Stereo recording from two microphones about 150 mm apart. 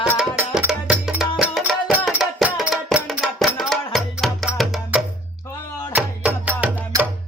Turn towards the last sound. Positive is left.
turn(degrees=-10)  # may be behind; listen again after turning